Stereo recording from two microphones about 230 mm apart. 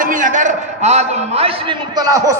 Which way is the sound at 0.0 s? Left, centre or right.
Right.